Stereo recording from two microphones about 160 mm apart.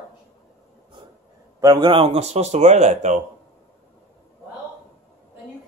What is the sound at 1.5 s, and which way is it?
Speech, 20° right (ahead or behind).